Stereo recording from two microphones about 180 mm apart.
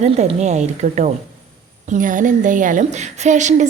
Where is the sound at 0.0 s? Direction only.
40° right (ahead or behind).